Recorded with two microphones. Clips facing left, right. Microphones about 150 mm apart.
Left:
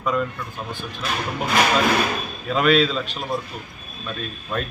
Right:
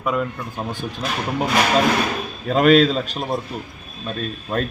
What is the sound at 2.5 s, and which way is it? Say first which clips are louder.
Speech: right 4 dB; 40° right (ahead or behind).